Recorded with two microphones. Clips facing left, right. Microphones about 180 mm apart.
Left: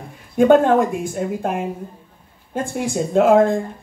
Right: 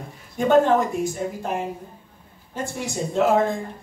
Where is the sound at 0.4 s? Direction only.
55° left (ahead or behind).